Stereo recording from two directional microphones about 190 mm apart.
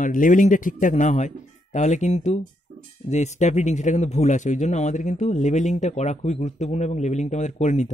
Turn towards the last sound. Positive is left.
turn(degrees=35)  # may be behind; listen again after turning